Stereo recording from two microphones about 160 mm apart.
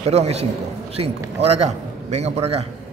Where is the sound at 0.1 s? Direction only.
40° right (ahead or behind).